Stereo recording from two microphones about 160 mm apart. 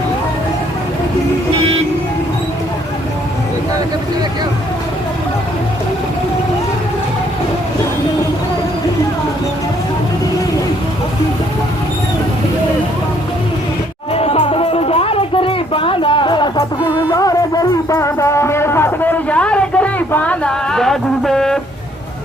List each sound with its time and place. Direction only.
14.1 s music: 40° left (ahead or behind); by 21.6 s centre (ahead or behind)